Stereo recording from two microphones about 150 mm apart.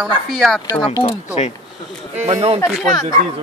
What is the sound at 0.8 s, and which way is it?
Speech, 35° left (ahead or behind).